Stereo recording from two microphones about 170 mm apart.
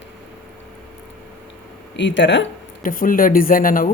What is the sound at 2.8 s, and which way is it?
Speech, 55° left (ahead or behind).